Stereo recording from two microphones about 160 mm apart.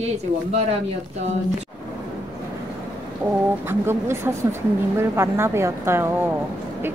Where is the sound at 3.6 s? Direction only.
15° right (ahead or behind).